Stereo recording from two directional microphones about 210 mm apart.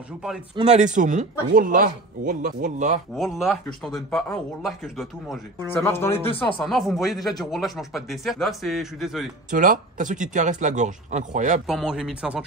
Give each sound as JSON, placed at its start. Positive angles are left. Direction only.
{"t": 0.6, "sound": "speech", "side_deg": -35}
{"t": 3.2, "sound": "speech", "side_deg": 0}
{"t": 5.8, "sound": "speech", "side_deg": 10}
{"t": 6.6, "sound": "speech", "side_deg": 0}
{"t": 9.5, "sound": "speech", "side_deg": -40}
{"t": 11.6, "sound": "speech", "side_deg": -5}